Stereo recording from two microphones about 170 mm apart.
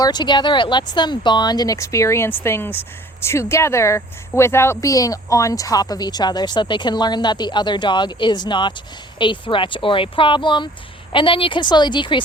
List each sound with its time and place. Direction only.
0.0 s speech: 25° left (ahead or behind)